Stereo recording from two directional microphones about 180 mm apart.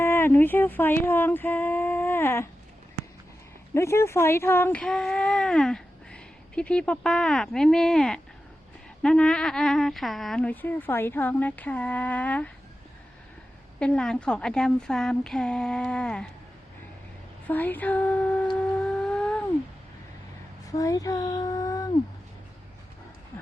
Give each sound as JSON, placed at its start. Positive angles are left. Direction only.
{"t": 0.0, "sound": "speech", "side_deg": 15}
{"t": 3.8, "sound": "speech", "side_deg": 15}
{"t": 13.7, "sound": "a woman's voice", "side_deg": 5}
{"t": 17.5, "sound": "speech", "side_deg": 10}
{"t": 18.5, "sound": "a sound", "side_deg": 5}
{"t": 20.7, "sound": "a sound", "side_deg": 20}